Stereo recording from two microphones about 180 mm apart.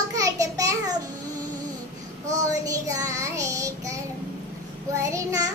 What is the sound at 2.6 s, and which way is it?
Child singing, 20° right (ahead or behind).